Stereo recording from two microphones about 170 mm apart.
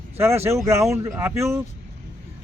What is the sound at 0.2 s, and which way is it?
A man's voice, 15° right (ahead or behind).